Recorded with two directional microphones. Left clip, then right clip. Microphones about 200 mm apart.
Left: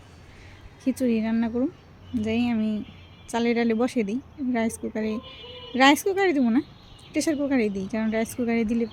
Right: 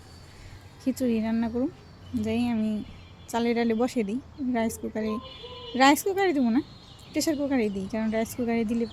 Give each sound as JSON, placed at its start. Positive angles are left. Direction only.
{"t": 0.9, "sound": "a woman's voice", "side_deg": 10}